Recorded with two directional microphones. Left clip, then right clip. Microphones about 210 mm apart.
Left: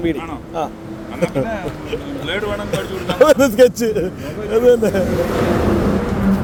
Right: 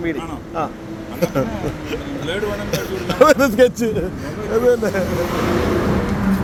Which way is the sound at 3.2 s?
30° left (ahead or behind).